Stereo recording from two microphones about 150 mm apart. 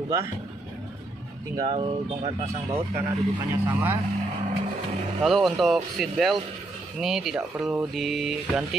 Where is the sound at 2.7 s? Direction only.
20° right (ahead or behind).